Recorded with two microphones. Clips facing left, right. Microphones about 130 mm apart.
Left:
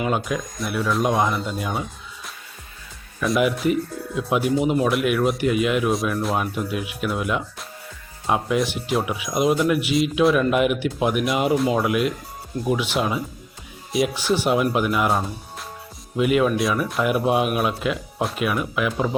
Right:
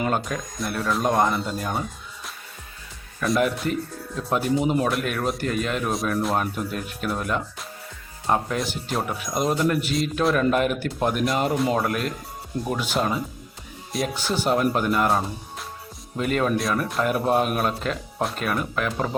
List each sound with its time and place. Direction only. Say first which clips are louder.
0.0 s speech: left 2 dB; 5° left (ahead or behind)